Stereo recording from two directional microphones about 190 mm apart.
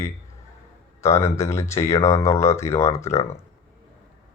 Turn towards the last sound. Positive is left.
turn(degrees=15)  # may be behind; listen again after turning